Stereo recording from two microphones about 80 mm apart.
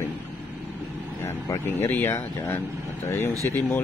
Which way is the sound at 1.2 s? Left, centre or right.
Left.